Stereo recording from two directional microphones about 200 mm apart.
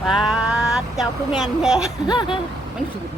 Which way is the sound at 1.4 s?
Centre (ahead or behind).